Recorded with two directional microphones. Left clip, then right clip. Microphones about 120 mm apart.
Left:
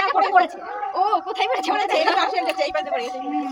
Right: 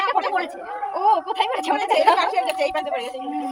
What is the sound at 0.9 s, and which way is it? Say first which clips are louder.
Speech: right 2 dB; 40° left (ahead or behind).